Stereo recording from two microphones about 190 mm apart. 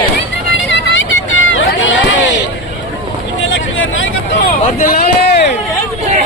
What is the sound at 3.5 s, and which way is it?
Vehicle, 90° left.